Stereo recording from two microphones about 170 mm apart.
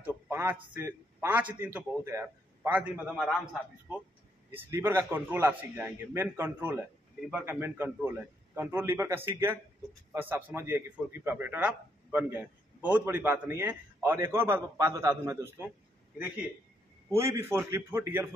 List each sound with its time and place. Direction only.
0.0 s a sound: 15° right (ahead or behind)
0.7 s a man's voice: 10° right (ahead or behind)
3.3 s a man's voice: 5° left (ahead or behind)
4.5 s a man's voice: 15° right (ahead or behind)
17.1 s a man's voice: 15° right (ahead or behind)